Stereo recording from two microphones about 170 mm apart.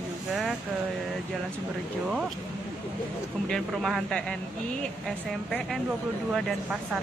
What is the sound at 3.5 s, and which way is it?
Speech, centre (ahead or behind).